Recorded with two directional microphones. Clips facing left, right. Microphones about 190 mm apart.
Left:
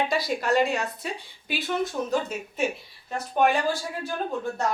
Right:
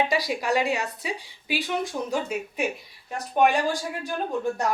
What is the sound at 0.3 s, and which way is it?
A woman's voice, 10° right (ahead or behind).